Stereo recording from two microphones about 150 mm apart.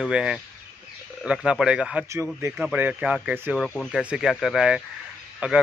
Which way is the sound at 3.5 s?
5° left (ahead or behind).